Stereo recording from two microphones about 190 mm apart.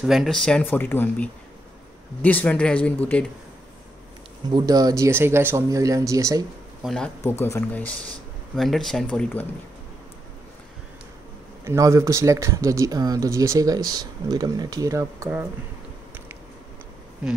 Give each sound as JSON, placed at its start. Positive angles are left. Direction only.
{"t": 0.0, "sound": "speech", "side_deg": 0}
{"t": 4.6, "sound": "speech", "side_deg": -20}
{"t": 6.8, "sound": "speech", "side_deg": 5}
{"t": 11.6, "sound": "speech", "side_deg": -15}